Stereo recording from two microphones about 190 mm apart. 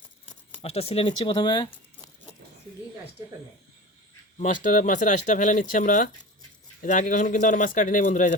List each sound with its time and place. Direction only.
0.6 s speech: 30° left (ahead or behind)
4.4 s speech: 45° left (ahead or behind)